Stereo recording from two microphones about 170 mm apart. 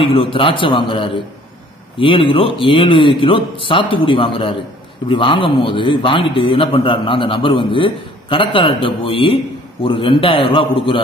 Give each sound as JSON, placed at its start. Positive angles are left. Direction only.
{"t": 0.0, "sound": "a man's voice", "side_deg": 30}